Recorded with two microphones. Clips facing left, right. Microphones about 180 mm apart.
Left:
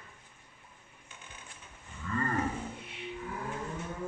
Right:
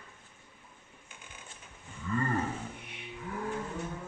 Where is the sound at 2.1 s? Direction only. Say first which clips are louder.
Right 2 dB; 20° right (ahead or behind).